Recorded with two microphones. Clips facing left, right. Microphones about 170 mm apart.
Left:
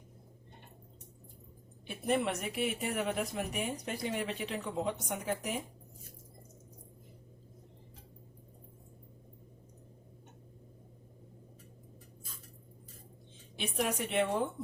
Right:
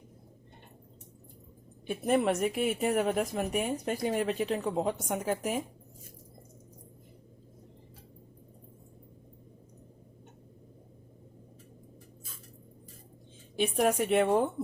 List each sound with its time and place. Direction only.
2.0 s speech: 45° right (ahead or behind)
13.6 s speech: 45° right (ahead or behind)